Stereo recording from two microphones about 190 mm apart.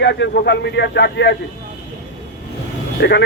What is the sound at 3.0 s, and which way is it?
Speech, 60° left (ahead or behind).